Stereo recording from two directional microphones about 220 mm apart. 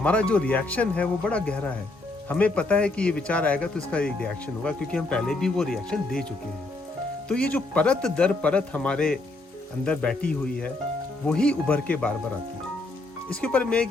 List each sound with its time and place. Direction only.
0.0 s speech: 5° left (ahead or behind)
7.3 s speech: 5° left (ahead or behind)
13.3 s speech: 5° left (ahead or behind)